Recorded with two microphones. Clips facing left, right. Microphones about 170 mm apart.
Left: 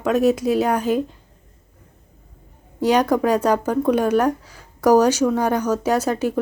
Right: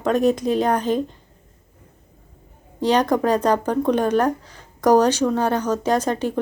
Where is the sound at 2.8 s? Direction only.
10° left (ahead or behind).